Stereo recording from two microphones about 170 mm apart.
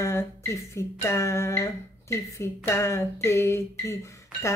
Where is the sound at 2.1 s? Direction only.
15° left (ahead or behind).